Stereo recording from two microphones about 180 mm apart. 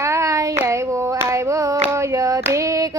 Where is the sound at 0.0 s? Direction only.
15° right (ahead or behind).